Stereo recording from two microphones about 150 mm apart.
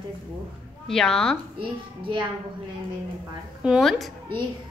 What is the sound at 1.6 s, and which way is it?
Speech, 35° right (ahead or behind).